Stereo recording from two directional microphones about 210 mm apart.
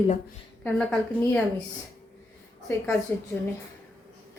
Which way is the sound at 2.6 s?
10° left (ahead or behind).